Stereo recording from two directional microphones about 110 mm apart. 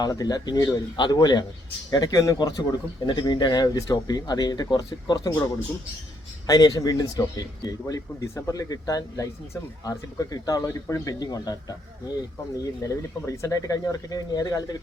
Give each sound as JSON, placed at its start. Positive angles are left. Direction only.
{"t": 0.0, "sound": "speech", "side_deg": 35}
{"t": 6.5, "sound": "speech", "side_deg": 35}